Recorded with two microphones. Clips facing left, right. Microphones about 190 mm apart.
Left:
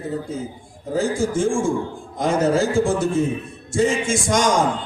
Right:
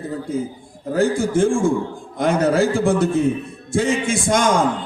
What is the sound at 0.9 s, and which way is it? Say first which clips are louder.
A man's voice: right 3 dB; 60° right (ahead or behind).